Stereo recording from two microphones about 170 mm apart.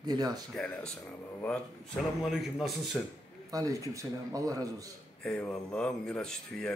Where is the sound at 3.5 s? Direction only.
20° right (ahead or behind).